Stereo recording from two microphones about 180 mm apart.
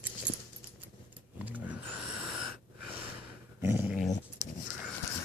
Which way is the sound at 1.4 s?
10° right (ahead or behind).